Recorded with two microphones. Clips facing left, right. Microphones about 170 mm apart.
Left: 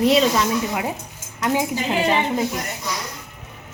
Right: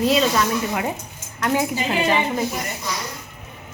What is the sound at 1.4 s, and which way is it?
Speech, 15° left (ahead or behind).